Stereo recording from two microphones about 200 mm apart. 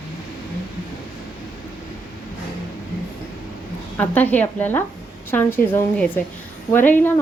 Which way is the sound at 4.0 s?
10° left (ahead or behind).